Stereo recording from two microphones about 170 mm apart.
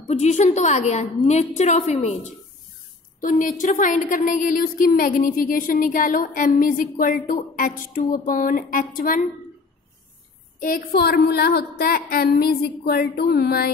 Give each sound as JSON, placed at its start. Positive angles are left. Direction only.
{"t": 0.1, "sound": "a woman's voice", "side_deg": 40}
{"t": 10.6, "sound": "a woman's voice", "side_deg": 60}